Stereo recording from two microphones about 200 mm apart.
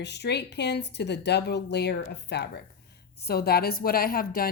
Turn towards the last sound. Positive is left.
turn(degrees=45)  # may be behind; listen again after turning